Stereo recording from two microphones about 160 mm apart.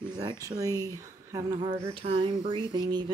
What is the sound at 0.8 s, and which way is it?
Speech, 20° right (ahead or behind).